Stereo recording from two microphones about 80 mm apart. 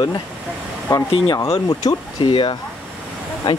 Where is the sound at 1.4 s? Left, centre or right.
Left.